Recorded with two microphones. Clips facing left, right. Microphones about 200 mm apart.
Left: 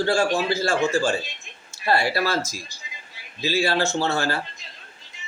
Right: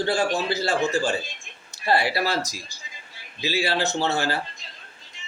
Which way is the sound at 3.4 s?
45° left (ahead or behind).